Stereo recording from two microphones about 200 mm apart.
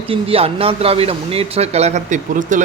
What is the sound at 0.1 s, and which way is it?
A man's voice, 30° right (ahead or behind).